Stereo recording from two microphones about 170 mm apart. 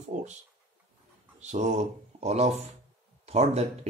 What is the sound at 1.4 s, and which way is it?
Speech, 45° right (ahead or behind).